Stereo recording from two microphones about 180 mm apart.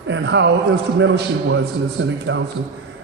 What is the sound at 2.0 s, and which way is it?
Speech, 90° right.